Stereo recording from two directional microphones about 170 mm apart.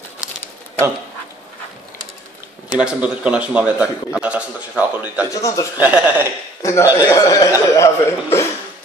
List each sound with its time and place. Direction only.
2.7 s a man's voice: 5° right (ahead or behind)
5.3 s speech: 20° left (ahead or behind)
5.8 s a man's voice: 10° right (ahead or behind)
6.6 s a man's voice: 20° left (ahead or behind)